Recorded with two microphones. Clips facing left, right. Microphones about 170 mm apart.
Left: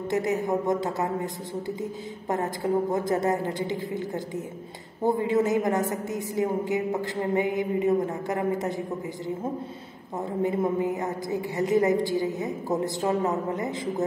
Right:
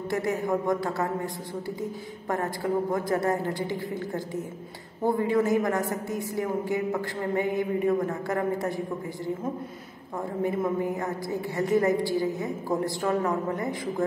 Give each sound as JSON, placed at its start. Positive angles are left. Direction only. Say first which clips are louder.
{"t": 0.1, "sound": "a woman's voice", "louder": "left 1 dB", "side_deg": 20}